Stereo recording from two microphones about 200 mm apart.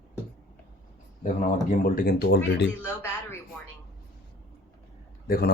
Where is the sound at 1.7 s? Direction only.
45° left (ahead or behind).